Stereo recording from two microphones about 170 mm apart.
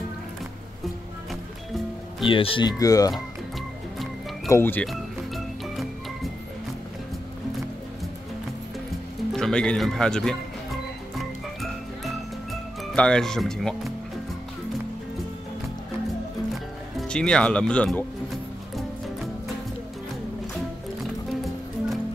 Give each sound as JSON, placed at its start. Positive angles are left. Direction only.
{"t": 2.2, "sound": "speech", "side_deg": 30}
{"t": 4.5, "sound": "speech", "side_deg": 15}
{"t": 4.8, "sound": "music", "side_deg": 0}
{"t": 9.3, "sound": "speech", "side_deg": 5}
{"t": 11.1, "sound": "frog", "side_deg": 0}
{"t": 12.9, "sound": "speech", "side_deg": 5}
{"t": 17.1, "sound": "speech", "side_deg": 5}